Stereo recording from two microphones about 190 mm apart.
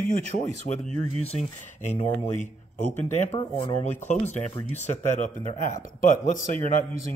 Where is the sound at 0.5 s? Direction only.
40° left (ahead or behind).